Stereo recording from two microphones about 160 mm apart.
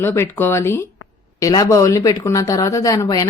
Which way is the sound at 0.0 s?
15° left (ahead or behind).